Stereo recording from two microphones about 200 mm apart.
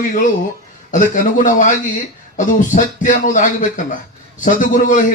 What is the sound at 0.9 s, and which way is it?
A man's voice, 40° left (ahead or behind).